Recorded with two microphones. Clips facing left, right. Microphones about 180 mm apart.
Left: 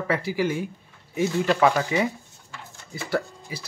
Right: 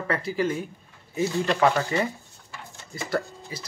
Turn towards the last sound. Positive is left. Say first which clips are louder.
# left 1 dB
turn(degrees=5)  # may be behind; listen again after turning